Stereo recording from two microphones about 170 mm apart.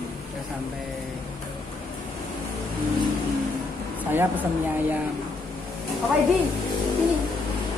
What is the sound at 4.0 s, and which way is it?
A woman's voice, 10° right (ahead or behind).